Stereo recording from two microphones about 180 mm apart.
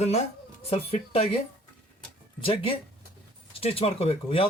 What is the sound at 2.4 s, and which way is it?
Speech, 30° left (ahead or behind).